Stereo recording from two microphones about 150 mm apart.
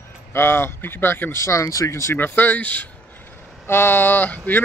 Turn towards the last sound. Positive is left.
turn(degrees=10)  # may be behind; listen again after turning